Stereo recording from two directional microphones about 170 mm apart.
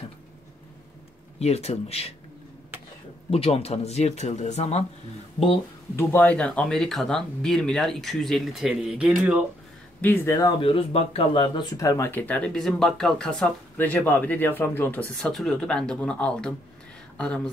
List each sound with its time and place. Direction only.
1.4 s speech: 40° left (ahead or behind)
3.3 s speech: 35° left (ahead or behind)
5.9 s speech: 10° left (ahead or behind)
10.0 s speech: 15° left (ahead or behind)
10.6 s speech: 35° left (ahead or behind); by 16.5 s 5° left (ahead or behind)